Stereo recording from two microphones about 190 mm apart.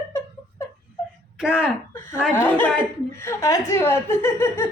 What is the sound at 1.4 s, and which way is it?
Speech, 5° right (ahead or behind).